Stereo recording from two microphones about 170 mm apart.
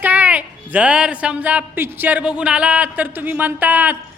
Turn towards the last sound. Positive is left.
turn(degrees=-10)  # may be behind; listen again after turning